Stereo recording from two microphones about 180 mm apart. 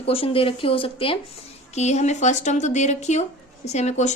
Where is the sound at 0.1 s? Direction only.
30° left (ahead or behind).